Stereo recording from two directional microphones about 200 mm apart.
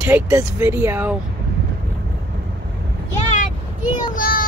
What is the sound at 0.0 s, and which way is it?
Speech, 15° right (ahead or behind).